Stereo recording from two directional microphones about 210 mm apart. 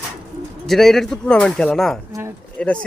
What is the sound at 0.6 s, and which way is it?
A man's voice, centre (ahead or behind).